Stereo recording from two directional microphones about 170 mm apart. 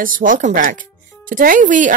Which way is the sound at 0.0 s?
50° right (ahead or behind).